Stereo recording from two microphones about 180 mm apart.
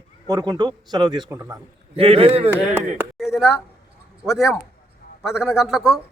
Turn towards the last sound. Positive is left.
turn(degrees=0)  # may be behind; listen again after turning